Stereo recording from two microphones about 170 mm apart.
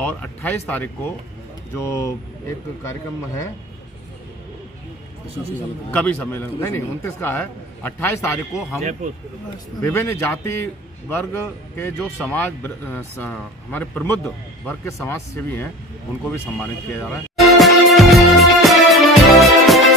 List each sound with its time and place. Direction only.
0.0 s a man's voice: 10° left (ahead or behind)
5.9 s a man's voice: 10° left (ahead or behind)
9.8 s a man's voice: 10° left (ahead or behind)
17.4 s music: centre (ahead or behind)